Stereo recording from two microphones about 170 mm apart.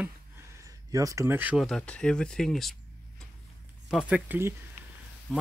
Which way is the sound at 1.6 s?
5° left (ahead or behind).